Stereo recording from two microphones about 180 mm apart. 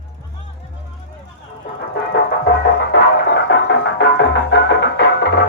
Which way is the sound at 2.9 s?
75° left (ahead or behind).